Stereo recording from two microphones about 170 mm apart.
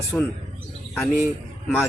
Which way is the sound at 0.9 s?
5° left (ahead or behind).